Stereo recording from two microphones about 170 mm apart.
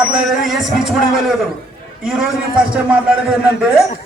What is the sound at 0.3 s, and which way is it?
Speech, centre (ahead or behind).